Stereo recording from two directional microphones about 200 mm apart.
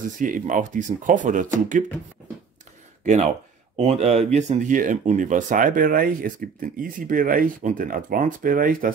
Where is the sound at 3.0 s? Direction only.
35° right (ahead or behind).